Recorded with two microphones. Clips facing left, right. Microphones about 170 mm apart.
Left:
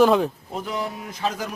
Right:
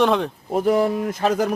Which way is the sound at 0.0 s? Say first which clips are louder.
Left 2 dB; centre (ahead or behind).